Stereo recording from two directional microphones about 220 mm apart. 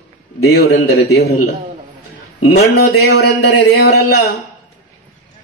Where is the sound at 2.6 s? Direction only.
45° left (ahead or behind).